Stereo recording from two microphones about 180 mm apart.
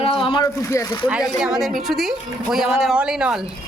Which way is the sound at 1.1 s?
5° right (ahead or behind).